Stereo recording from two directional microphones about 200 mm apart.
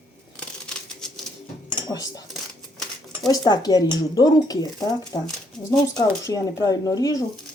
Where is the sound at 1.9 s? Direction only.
20° left (ahead or behind).